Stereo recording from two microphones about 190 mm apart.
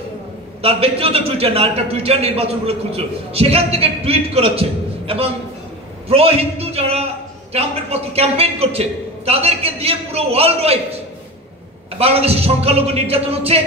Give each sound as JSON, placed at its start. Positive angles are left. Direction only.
{"t": 0.6, "sound": "a man's voice", "side_deg": -30}
{"t": 12.0, "sound": "a man's voice", "side_deg": -30}